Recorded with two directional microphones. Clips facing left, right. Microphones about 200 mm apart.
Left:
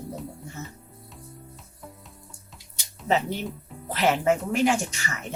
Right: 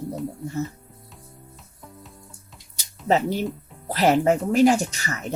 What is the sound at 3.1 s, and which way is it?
Speech, 40° right (ahead or behind).